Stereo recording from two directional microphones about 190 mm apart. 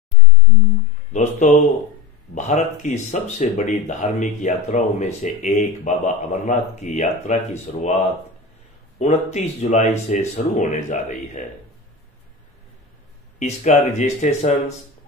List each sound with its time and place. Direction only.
1.1 s speech: 40° left (ahead or behind)
8.9 s speech: 35° left (ahead or behind)
13.4 s speech: 35° left (ahead or behind)